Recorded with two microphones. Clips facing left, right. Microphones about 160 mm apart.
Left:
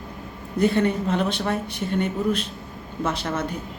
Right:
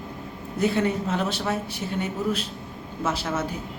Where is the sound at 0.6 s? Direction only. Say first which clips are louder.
Left 3 dB; 5° right (ahead or behind).